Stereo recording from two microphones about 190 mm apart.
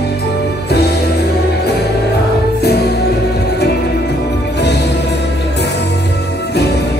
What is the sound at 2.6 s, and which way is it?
Music, 60° left (ahead or behind).